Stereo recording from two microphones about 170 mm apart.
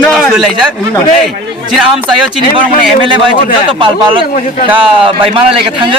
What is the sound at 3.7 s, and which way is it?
A man's voice, 30° right (ahead or behind).